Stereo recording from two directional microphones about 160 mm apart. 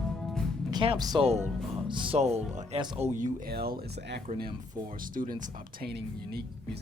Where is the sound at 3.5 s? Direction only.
80° right.